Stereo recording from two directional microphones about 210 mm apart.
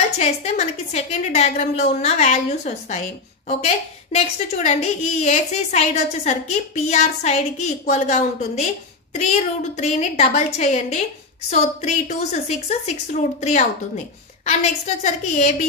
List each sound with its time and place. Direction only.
0.2 s a woman's voice: 30° left (ahead or behind)